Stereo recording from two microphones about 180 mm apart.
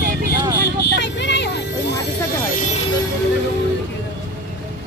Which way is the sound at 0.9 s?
75° left (ahead or behind).